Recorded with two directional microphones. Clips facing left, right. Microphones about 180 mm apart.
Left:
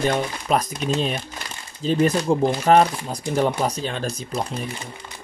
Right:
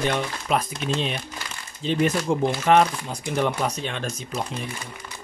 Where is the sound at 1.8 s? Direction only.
40° left (ahead or behind).